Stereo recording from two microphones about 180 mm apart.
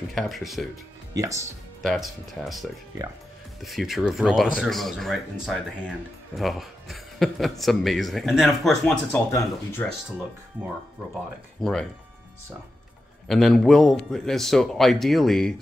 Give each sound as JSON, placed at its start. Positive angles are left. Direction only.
{"t": 0.1, "sound": "speech", "side_deg": 0}
{"t": 1.1, "sound": "speech", "side_deg": -15}
{"t": 1.8, "sound": "speech", "side_deg": 0}
{"t": 9.3, "sound": "speech", "side_deg": 15}
{"t": 11.6, "sound": "speech", "side_deg": 5}
{"t": 13.3, "sound": "speech", "side_deg": 0}